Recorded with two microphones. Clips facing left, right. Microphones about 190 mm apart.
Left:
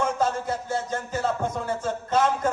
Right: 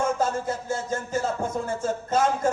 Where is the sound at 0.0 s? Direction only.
50° right (ahead or behind).